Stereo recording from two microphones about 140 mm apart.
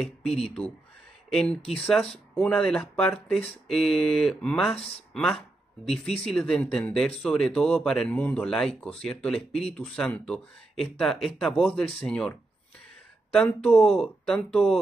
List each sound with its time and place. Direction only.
0.0 s speech: 5° left (ahead or behind)
4.7 s speech: 45° left (ahead or behind)
5.1 s speech: 5° left (ahead or behind)